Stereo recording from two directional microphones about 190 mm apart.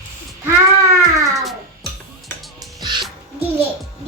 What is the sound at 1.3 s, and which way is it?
Cat, centre (ahead or behind).